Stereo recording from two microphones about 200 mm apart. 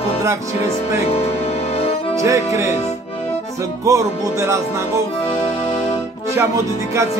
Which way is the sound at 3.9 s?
15° right (ahead or behind).